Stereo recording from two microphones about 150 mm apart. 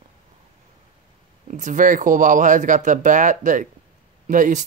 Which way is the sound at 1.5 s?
60° right (ahead or behind).